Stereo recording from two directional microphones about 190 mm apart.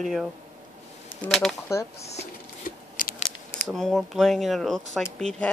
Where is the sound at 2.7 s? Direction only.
45° left (ahead or behind).